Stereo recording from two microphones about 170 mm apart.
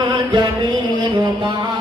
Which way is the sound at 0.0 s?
25° right (ahead or behind).